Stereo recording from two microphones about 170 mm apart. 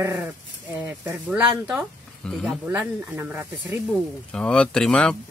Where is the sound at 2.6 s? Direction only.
10° right (ahead or behind).